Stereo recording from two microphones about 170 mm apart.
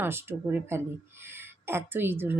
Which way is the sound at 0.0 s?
15° right (ahead or behind).